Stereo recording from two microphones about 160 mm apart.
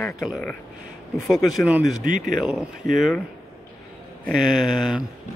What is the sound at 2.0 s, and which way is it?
Speech, 55° right (ahead or behind).